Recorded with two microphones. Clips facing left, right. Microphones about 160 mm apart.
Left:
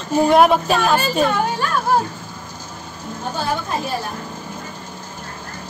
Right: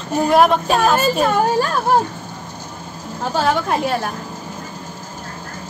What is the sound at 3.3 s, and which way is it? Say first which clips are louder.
Speech: right 5 dB; 90° right.